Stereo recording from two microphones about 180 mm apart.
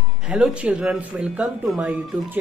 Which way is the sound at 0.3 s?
5° right (ahead or behind).